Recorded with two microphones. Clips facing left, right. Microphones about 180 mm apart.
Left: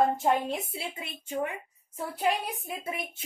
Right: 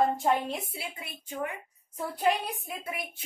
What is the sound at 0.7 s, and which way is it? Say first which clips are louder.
Speech: left 3 dB; 25° left (ahead or behind).